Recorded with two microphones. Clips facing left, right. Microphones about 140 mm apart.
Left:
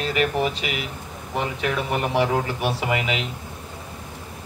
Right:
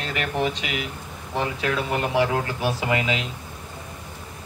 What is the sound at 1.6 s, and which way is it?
Speech, 5° left (ahead or behind).